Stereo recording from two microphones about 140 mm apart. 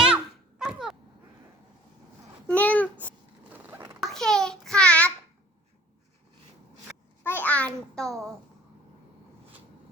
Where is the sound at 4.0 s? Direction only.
Centre (ahead or behind).